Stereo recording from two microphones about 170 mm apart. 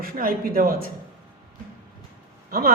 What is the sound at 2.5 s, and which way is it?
Speech, 60° right (ahead or behind).